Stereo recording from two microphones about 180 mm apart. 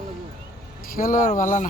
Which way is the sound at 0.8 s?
50° left (ahead or behind).